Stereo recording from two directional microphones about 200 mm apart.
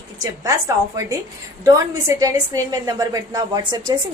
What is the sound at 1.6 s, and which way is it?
A woman's voice, 20° right (ahead or behind).